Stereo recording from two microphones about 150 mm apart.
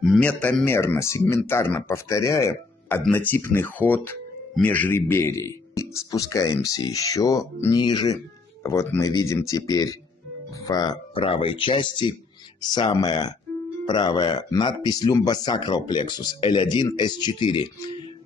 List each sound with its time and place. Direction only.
0.0 s speech: 5° left (ahead or behind); by 8.2 s 30° left (ahead or behind)
8.6 s speech: 15° left (ahead or behind)